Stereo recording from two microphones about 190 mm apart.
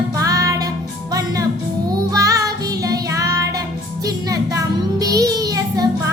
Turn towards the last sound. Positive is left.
turn(degrees=-20)  # may be behind; listen again after turning